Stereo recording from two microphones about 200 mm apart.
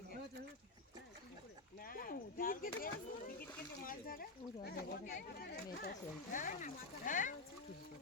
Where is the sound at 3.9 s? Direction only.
45° left (ahead or behind).